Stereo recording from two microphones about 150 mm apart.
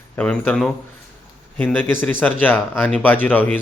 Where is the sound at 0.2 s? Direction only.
5° left (ahead or behind).